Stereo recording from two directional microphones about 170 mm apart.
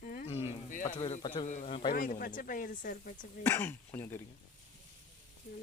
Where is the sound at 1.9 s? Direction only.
55° left (ahead or behind).